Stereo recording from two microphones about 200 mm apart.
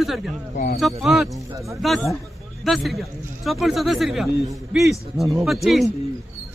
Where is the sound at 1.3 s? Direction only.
15° right (ahead or behind).